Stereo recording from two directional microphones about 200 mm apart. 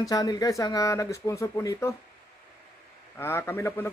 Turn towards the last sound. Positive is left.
turn(degrees=10)  # may be behind; listen again after turning